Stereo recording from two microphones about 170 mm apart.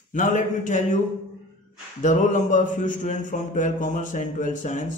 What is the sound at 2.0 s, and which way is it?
Speech, 50° left (ahead or behind).